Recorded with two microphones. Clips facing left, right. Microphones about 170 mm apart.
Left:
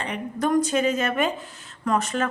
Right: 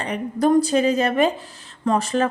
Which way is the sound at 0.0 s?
35° right (ahead or behind).